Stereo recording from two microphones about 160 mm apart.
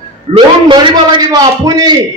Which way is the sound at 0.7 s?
25° right (ahead or behind).